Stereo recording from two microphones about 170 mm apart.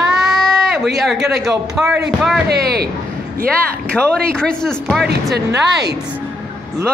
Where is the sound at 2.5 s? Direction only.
65° right (ahead or behind).